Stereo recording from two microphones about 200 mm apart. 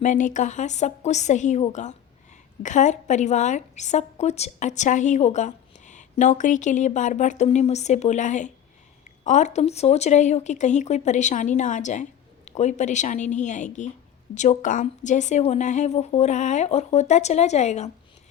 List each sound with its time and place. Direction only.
0.0 s a woman's voice: 40° left (ahead or behind)